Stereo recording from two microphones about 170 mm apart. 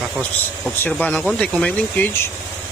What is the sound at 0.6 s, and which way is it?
Speech, 5° left (ahead or behind).